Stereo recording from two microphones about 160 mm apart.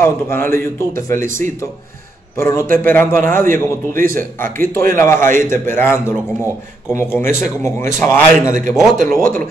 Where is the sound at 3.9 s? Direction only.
60° right (ahead or behind).